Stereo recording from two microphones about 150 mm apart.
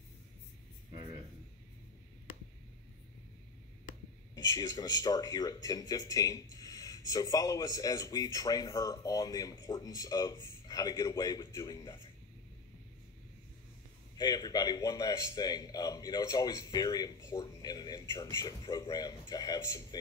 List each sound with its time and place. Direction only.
4.6 s a man's voice: 25° left (ahead or behind)
14.1 s a man's voice: 25° left (ahead or behind)